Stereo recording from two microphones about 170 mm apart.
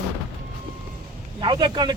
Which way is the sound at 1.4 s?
25° right (ahead or behind).